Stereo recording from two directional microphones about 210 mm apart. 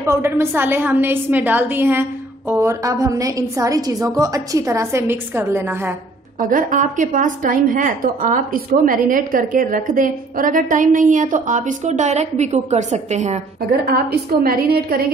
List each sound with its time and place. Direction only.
0.0 s a woman's voice: 10° right (ahead or behind)
6.5 s a woman's voice: 35° right (ahead or behind)
13.8 s a woman's voice: 45° right (ahead or behind)